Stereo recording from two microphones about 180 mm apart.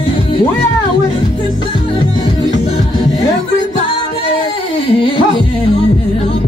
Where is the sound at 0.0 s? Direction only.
30° left (ahead or behind).